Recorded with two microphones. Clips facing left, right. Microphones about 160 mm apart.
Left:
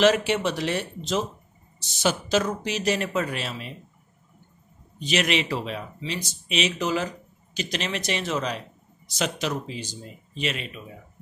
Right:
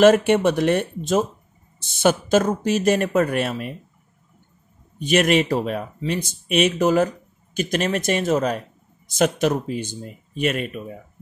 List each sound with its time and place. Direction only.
0.0 s a man's voice: 50° right (ahead or behind)
4.9 s a man's voice: 50° right (ahead or behind)